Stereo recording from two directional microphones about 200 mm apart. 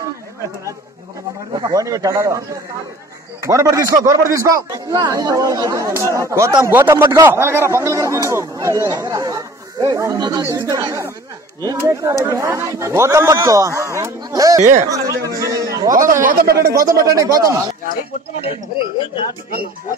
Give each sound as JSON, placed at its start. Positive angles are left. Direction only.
{"t": 1.6, "sound": "a man's voice", "side_deg": -15}
{"t": 3.4, "sound": "a man's voice", "side_deg": -15}
{"t": 14.6, "sound": "speech", "side_deg": -35}
{"t": 14.9, "sound": "a sound", "side_deg": -15}
{"t": 15.9, "sound": "speech", "side_deg": -40}
{"t": 17.1, "sound": "a man's voice", "side_deg": -15}
{"t": 18.4, "sound": "speech", "side_deg": 30}